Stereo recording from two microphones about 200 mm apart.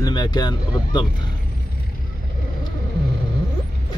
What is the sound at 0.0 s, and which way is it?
Speech, 20° left (ahead or behind).